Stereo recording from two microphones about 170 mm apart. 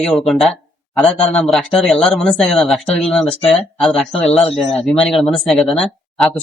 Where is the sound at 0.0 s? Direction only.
Centre (ahead or behind).